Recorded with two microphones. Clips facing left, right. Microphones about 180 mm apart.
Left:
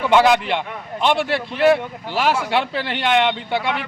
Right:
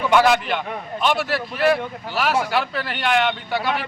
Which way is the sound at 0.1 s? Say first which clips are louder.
Left 2 dB; 20° left (ahead or behind).